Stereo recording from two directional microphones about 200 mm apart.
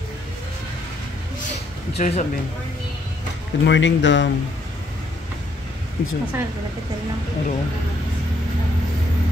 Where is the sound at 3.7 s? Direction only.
65° left (ahead or behind).